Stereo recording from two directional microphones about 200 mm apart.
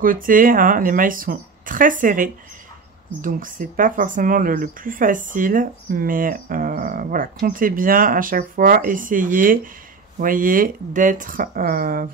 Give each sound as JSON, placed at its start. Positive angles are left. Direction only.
{"t": 0.0, "sound": "speech", "side_deg": -45}